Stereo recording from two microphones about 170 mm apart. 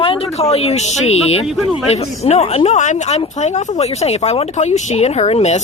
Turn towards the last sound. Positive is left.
turn(degrees=40)  # may be behind; listen again after turning